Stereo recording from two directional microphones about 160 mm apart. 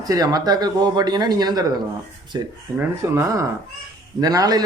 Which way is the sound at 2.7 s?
5° left (ahead or behind).